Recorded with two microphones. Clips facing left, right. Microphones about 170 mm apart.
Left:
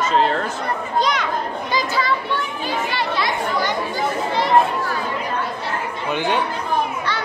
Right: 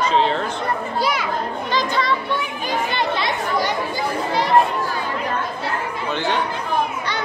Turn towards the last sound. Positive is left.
turn(degrees=15)  # may be behind; listen again after turning